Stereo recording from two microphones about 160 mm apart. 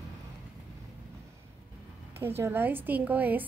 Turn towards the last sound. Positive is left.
turn(degrees=-10)  # may be behind; listen again after turning